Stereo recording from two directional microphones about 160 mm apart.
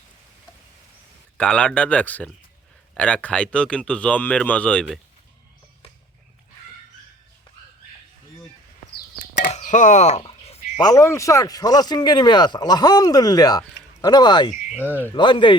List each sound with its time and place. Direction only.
1.4 s a man's voice: 5° left (ahead or behind)
9.3 s telephone dialing: 50° left (ahead or behind)
10.8 s speech: 20° left (ahead or behind)
14.7 s speech: 10° right (ahead or behind)
15.1 s speech: 30° left (ahead or behind)